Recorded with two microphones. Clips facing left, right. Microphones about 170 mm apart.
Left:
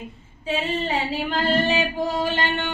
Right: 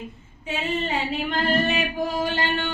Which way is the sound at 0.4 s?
30° left (ahead or behind).